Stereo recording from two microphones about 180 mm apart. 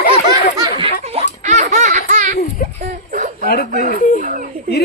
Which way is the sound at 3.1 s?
45° right (ahead or behind).